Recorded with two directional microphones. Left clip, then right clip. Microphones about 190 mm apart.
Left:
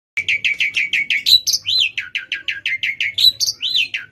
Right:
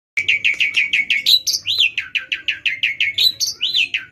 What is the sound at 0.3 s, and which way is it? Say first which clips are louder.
Bird: right 1 dB; 10° left (ahead or behind).